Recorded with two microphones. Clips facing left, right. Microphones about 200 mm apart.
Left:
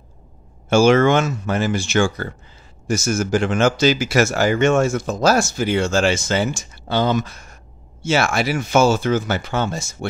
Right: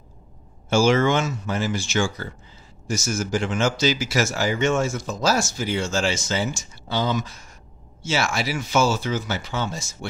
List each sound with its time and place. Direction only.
0.7 s speech: 60° left (ahead or behind)